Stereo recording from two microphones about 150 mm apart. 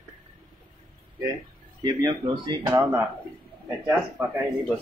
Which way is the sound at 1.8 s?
30° right (ahead or behind).